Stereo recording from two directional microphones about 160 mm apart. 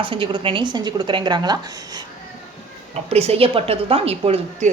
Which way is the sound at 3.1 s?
40° right (ahead or behind).